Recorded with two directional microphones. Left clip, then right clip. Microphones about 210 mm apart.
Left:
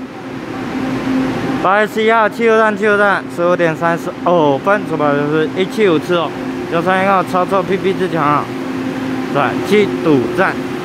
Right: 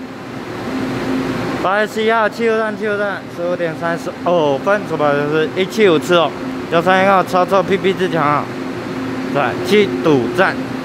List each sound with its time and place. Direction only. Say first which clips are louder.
1.6 s speech: left 3 dB; 5° left (ahead or behind)
2.5 s speech: left 6 dB; 15° left (ahead or behind); by 10.5 s 5° right (ahead or behind)